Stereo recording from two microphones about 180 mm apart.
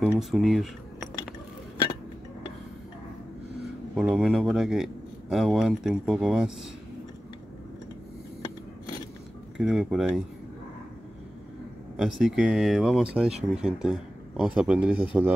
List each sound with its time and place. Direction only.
0.0 s speech: centre (ahead or behind)
3.9 s speech: 5° right (ahead or behind)
9.6 s speech: centre (ahead or behind)
12.0 s speech: centre (ahead or behind)